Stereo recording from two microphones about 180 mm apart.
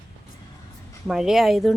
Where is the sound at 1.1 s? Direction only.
Centre (ahead or behind).